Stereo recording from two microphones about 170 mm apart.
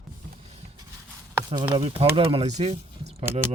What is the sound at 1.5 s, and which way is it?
Speech, 30° right (ahead or behind).